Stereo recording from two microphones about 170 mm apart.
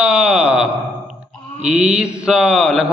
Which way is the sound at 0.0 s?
5° right (ahead or behind).